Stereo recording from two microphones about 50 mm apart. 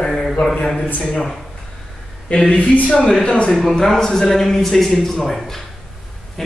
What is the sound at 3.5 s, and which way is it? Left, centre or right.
A man's voice, centre.